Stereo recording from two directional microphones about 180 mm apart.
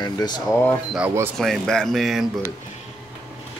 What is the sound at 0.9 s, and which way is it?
Speech, 10° right (ahead or behind).